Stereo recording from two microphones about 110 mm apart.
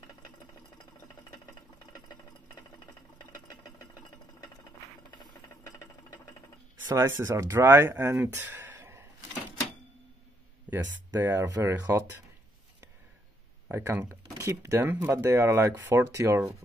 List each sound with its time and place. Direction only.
5.2 s a sound: 35° left (ahead or behind)
6.9 s speech: 25° right (ahead or behind)
10.7 s speech: 15° right (ahead or behind)
11.1 s speech: 25° right (ahead or behind)
13.7 s speech: 20° right (ahead or behind)